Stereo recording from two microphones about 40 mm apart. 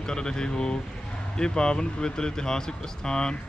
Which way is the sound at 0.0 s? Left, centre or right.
Centre.